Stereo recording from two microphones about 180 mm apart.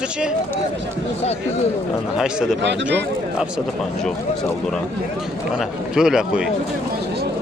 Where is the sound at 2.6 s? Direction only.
75° right (ahead or behind).